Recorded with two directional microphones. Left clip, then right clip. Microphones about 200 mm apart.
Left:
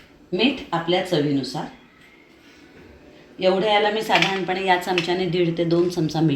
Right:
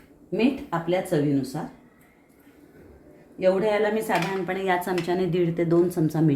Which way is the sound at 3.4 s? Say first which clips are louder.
Left 3 dB; 15° right (ahead or behind).